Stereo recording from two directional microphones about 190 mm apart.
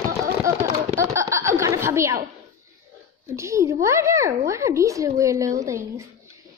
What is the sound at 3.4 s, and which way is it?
A woman's voice, 15° right (ahead or behind).